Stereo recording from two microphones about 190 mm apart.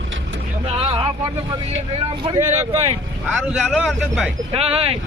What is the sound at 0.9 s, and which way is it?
Vehicle, 20° right (ahead or behind).